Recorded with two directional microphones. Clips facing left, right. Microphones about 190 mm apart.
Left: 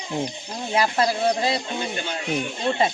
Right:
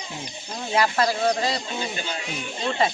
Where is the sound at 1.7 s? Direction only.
55° left (ahead or behind).